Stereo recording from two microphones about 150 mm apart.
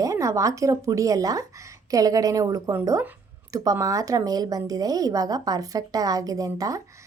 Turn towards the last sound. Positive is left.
turn(degrees=-25)  # may be behind; listen again after turning